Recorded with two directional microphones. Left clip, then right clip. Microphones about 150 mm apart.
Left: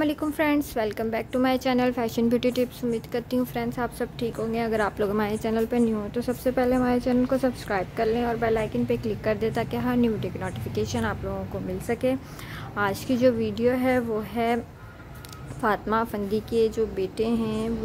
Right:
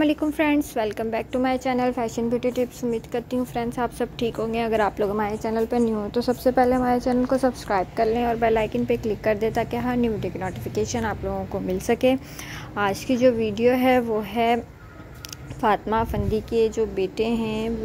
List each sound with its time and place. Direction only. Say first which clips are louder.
0.0 s a woman's voice: right 3 dB; 5° right (ahead or behind)
2.3 s speech: right 1 dB; 10° left (ahead or behind)
3.1 s a woman's voice: right 1 dB; 5° right (ahead or behind)
5.1 s a woman's voice: right 1 dB; 5° left (ahead or behind)
5.6 s a woman's voice: right 3 dB; 10° right (ahead or behind)
11.8 s a woman's voice: right 5 dB; 35° right (ahead or behind)
12.7 s a woman's voice: right 2 dB; 15° right (ahead or behind)
13.7 s speech: right 4 dB; 25° right (ahead or behind)
15.6 s a woman's voice: right 3 dB; 15° right (ahead or behind)